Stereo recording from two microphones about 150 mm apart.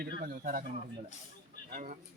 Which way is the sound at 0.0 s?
75° right (ahead or behind).